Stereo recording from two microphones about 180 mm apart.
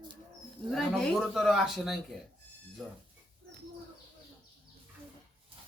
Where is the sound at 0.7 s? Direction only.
Centre (ahead or behind).